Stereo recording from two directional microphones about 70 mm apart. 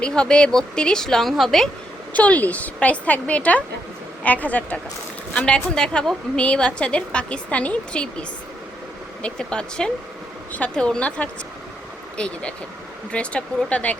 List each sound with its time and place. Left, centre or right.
0.0 s a woman's voice: centre
2.1 s a woman's voice: left
9.2 s a woman's voice: centre